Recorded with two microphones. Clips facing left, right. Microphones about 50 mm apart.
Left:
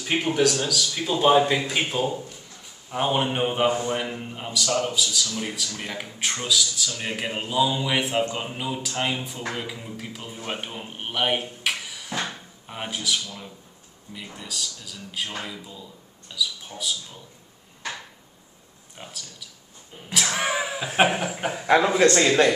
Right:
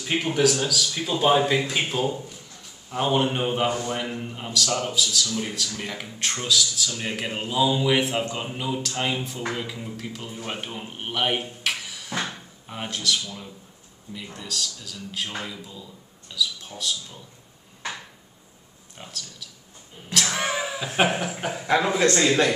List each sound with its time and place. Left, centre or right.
0.2 s a man's voice: centre
2.9 s speech: centre
4.0 s a man's voice: centre
12.7 s a man's voice: centre
18.9 s speech: centre